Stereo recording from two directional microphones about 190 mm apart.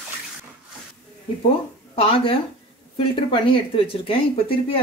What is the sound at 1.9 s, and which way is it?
Speech, 30° left (ahead or behind).